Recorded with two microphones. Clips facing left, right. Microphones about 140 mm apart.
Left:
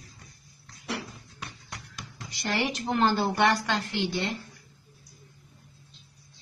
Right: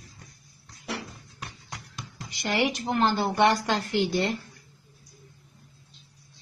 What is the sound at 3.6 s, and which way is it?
Speech, 35° right (ahead or behind).